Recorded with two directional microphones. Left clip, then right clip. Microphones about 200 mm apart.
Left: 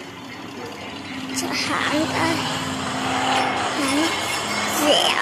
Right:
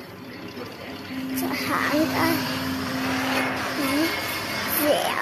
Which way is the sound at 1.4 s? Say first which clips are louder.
Left 2 dB; 5° right (ahead or behind).